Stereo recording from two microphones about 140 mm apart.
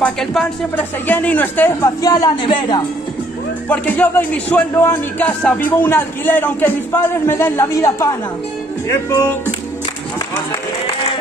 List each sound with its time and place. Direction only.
0.0 s speech: 5° left (ahead or behind)
0.7 s a man's voice: 15° left (ahead or behind)
2.0 s speech: 25° left (ahead or behind)
3.6 s a man's voice: 10° left (ahead or behind)